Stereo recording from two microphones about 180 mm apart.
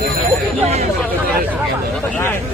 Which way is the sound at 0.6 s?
35° right (ahead or behind).